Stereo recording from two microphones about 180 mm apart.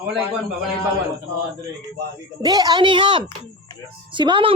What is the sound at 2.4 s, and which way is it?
A woman's voice, 20° right (ahead or behind).